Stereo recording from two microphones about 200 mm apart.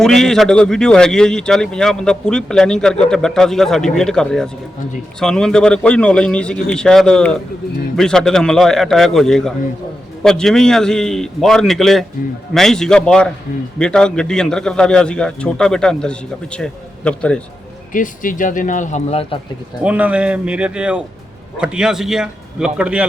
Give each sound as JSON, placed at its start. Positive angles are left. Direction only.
{"t": 0.0, "sound": "a man's voice", "side_deg": 0}
{"t": 17.9, "sound": "speech", "side_deg": 40}
{"t": 19.8, "sound": "a man's voice", "side_deg": -5}